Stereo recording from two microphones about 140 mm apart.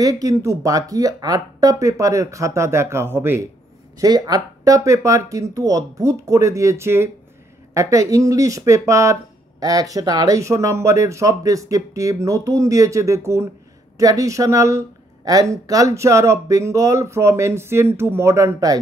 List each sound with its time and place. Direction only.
0.0 s speech: 25° right (ahead or behind)